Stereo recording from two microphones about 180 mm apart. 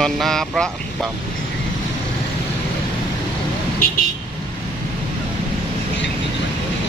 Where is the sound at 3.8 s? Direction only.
55° left (ahead or behind).